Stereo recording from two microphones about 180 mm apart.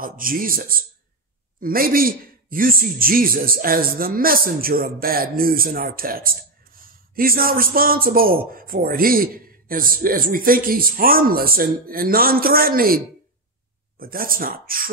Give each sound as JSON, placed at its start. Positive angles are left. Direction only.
{"t": 0.0, "sound": "a man's voice", "side_deg": -50}